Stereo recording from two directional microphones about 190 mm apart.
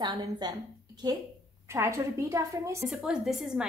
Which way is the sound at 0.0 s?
20° right (ahead or behind).